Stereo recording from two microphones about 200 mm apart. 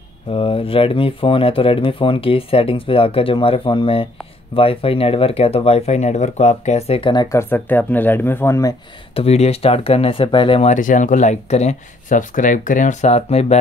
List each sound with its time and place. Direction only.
0.3 s speech: 25° left (ahead or behind)
9.1 s speech: 30° left (ahead or behind)